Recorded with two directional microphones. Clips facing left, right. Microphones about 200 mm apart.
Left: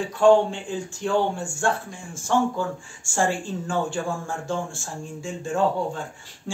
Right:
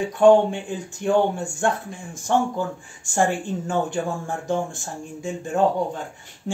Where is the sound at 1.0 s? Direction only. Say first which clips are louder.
Right 4 dB; 55° right (ahead or behind).